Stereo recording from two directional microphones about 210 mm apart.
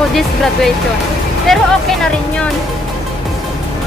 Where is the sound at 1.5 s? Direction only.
Centre (ahead or behind).